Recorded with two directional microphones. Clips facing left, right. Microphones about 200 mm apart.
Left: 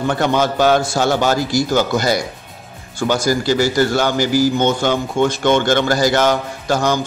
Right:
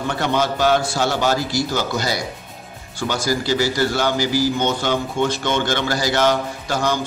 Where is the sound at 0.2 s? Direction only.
50° left (ahead or behind).